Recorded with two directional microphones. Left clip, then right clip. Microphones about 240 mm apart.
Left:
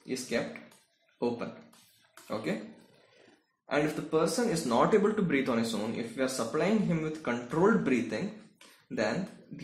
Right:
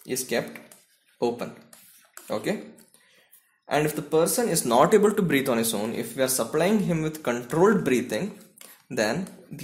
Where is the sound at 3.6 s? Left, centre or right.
Right.